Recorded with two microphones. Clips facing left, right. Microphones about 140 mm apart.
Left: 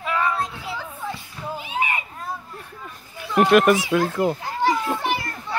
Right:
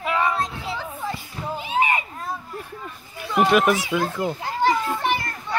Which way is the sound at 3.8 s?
Centre (ahead or behind).